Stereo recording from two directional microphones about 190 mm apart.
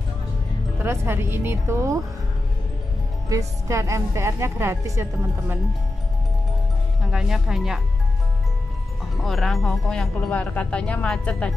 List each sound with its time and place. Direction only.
0.8 s a woman's voice: 15° right (ahead or behind)
3.3 s a woman's voice: 15° right (ahead or behind)
7.1 s speech: 5° right (ahead or behind)
9.2 s speech: centre (ahead or behind)